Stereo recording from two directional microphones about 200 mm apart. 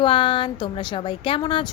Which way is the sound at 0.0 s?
25° left (ahead or behind).